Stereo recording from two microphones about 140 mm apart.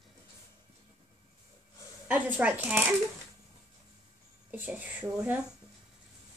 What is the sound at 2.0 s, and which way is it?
Speech, 10° right (ahead or behind).